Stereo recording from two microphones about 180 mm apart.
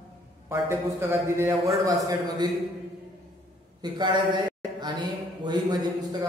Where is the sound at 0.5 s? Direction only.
15° right (ahead or behind).